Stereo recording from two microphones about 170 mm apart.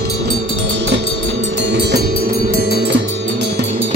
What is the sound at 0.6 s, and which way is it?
Music, 90° right.